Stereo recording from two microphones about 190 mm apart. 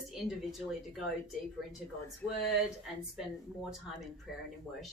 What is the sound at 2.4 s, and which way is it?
Speech, centre (ahead or behind).